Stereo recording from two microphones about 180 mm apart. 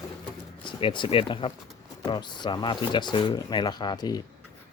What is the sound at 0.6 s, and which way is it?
Speech, 25° left (ahead or behind).